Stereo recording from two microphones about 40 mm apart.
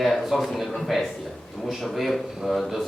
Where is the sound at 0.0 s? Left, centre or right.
Centre.